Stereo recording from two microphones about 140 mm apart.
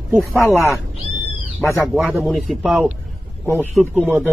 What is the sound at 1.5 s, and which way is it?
Speech, 15° left (ahead or behind).